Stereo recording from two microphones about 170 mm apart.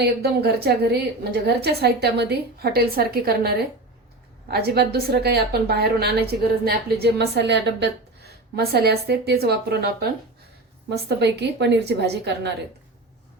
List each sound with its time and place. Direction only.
0.0 s a woman's voice: 70° right (ahead or behind)
10.8 s a woman's voice: 85° right